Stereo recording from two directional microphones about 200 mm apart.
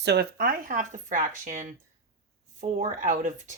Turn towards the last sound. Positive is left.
turn(degrees=-40)  # may be behind; listen again after turning